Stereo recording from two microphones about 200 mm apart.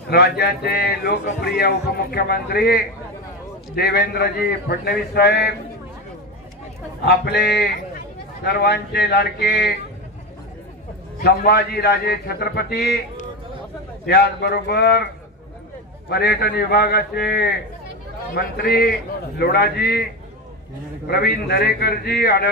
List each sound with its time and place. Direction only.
0.1 s a man's voice: 55° left (ahead or behind)
7.1 s a man's voice: 55° left (ahead or behind)
11.2 s a man's voice: 55° left (ahead or behind)
16.1 s a man's voice: 55° left (ahead or behind)
21.1 s a man's voice: 50° left (ahead or behind)